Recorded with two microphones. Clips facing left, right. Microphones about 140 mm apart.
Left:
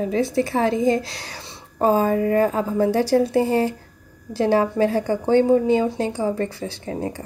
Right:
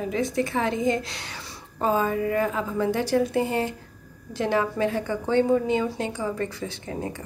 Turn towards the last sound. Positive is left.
turn(degrees=35)  # may be behind; listen again after turning